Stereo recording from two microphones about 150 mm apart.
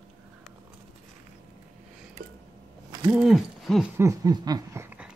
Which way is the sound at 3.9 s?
20° right (ahead or behind).